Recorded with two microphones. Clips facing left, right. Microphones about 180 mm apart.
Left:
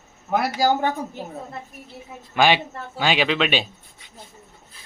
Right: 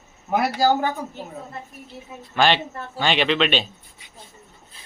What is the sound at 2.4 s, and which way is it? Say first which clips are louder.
Speech: left 1 dB; 10° left (ahead or behind).